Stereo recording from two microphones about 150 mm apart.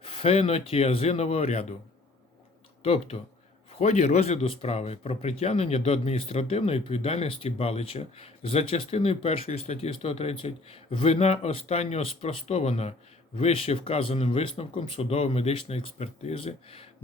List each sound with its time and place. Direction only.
0.0 s speech: 40° left (ahead or behind)
2.8 s speech: 40° left (ahead or behind)